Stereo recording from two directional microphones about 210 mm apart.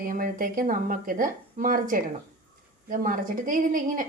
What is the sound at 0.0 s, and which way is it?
Speech, 40° right (ahead or behind).